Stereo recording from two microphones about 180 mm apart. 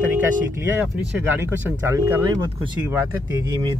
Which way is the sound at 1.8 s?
15° right (ahead or behind).